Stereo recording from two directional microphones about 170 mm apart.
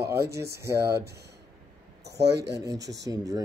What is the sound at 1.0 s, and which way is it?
Speech, 75° right (ahead or behind).